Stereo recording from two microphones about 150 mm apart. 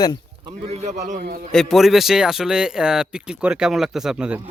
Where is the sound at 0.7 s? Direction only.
45° right (ahead or behind).